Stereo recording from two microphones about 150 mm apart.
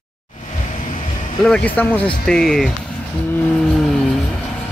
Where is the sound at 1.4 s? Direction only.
10° left (ahead or behind).